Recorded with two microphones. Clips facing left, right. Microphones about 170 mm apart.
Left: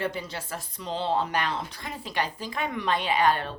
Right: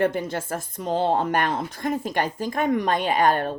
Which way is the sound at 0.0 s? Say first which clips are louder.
Right 8 dB; 50° right (ahead or behind).